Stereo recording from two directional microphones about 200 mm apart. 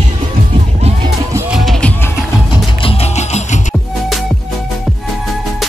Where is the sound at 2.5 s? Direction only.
25° left (ahead or behind).